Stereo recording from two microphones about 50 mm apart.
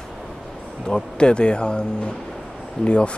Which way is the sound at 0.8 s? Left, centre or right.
Centre.